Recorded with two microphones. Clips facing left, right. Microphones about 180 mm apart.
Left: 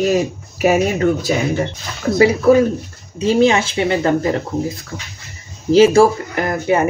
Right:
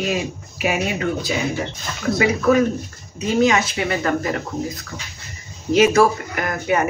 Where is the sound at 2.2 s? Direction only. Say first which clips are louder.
Left 5 dB; 30° left (ahead or behind).